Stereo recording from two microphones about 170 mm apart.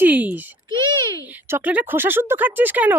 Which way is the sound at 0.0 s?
10° right (ahead or behind).